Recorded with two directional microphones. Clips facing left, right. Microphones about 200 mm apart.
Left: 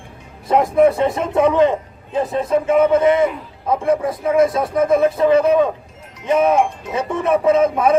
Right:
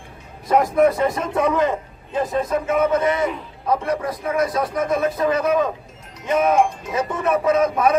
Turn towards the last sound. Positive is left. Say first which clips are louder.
# left 3 dB
turn(degrees=25)  # may be behind; listen again after turning